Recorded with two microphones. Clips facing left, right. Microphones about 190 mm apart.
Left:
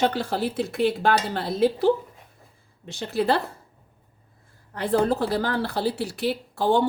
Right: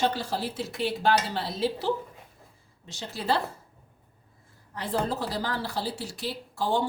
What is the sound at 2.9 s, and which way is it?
Speech, 60° left (ahead or behind).